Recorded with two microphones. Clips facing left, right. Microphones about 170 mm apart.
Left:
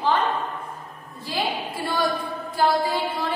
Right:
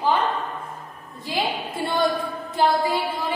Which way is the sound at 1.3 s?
20° right (ahead or behind).